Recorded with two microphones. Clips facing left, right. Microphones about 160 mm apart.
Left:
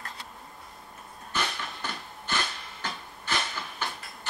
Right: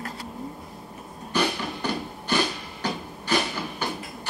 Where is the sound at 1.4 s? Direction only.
35° right (ahead or behind).